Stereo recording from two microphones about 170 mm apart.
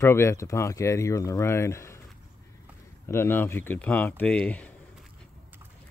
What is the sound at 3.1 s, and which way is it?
Speech, 15° left (ahead or behind).